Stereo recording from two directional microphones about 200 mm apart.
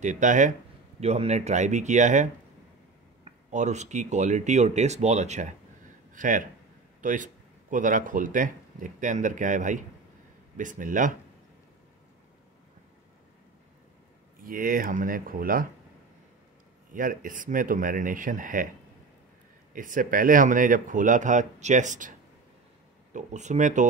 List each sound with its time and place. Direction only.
0.0 s speech: 40° right (ahead or behind)
3.3 s speech: 35° right (ahead or behind)
14.4 s speech: 45° right (ahead or behind)
16.9 s speech: 45° right (ahead or behind)
19.7 s speech: 40° right (ahead or behind)
23.1 s speech: 35° right (ahead or behind)